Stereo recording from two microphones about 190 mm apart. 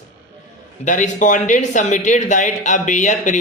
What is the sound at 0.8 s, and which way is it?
Speech, 40° left (ahead or behind).